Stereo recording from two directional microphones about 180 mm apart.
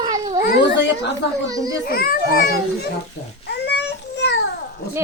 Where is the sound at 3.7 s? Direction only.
70° left (ahead or behind).